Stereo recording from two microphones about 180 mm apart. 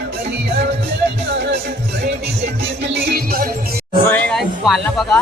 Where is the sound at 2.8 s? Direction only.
70° right (ahead or behind).